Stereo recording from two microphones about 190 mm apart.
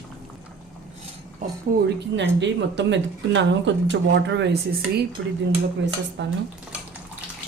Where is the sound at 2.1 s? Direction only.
70° right (ahead or behind).